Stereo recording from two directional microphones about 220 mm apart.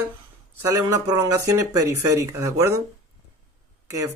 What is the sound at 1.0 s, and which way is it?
Speech, 15° right (ahead or behind).